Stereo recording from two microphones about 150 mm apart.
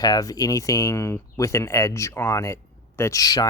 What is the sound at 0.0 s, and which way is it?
Speech, 25° left (ahead or behind).